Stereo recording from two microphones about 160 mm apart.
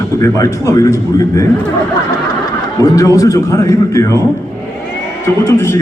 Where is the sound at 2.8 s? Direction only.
20° left (ahead or behind).